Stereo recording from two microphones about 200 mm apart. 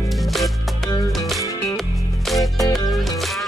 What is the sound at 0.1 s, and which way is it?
Music, centre (ahead or behind).